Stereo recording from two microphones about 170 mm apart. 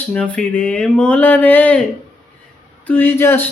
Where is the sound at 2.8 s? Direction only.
10° left (ahead or behind).